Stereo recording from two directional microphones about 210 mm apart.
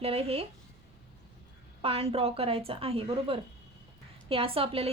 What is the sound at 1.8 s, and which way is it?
A woman's voice, 30° right (ahead or behind).